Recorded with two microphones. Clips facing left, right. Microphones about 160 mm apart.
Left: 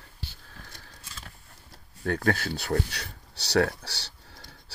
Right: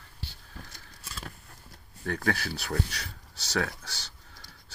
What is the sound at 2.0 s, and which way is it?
Speech, 55° left (ahead or behind).